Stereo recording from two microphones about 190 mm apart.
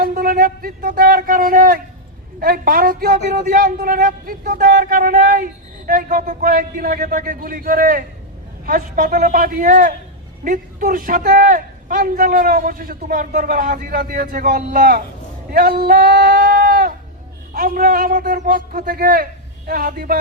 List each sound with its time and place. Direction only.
0.0 s speech: 50° right (ahead or behind)